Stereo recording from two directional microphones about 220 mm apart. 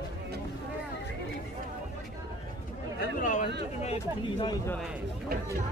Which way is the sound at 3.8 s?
25° left (ahead or behind).